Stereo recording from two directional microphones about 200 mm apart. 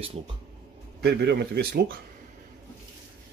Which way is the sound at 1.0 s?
55° right (ahead or behind).